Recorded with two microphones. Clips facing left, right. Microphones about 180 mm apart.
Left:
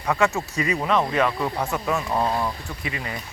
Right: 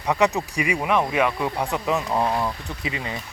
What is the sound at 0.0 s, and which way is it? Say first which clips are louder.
Speech: right 1 dB; 20° right (ahead or behind).